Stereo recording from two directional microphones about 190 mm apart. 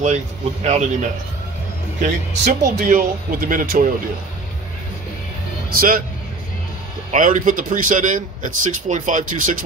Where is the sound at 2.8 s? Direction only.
45° right (ahead or behind).